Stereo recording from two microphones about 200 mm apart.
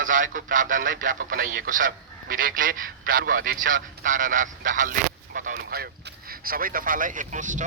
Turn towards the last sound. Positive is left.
turn(degrees=-40)  # may be behind; listen again after turning